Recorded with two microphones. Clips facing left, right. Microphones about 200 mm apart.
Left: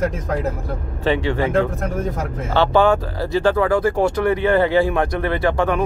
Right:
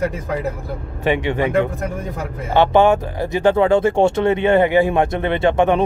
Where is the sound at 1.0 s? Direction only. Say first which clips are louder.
Right 1 dB; 20° right (ahead or behind).